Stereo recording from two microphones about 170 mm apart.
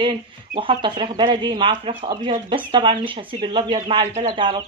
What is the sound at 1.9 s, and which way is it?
Speech, 40° right (ahead or behind).